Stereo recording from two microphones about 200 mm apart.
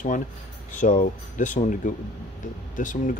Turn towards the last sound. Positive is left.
turn(degrees=40)  # may be behind; listen again after turning